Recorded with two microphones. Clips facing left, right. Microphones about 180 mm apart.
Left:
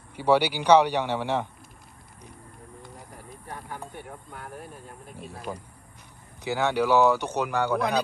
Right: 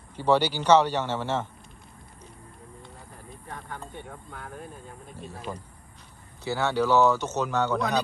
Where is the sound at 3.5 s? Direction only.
15° left (ahead or behind).